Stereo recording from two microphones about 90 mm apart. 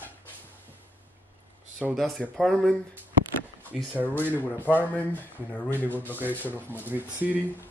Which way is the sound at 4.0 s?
15° right (ahead or behind).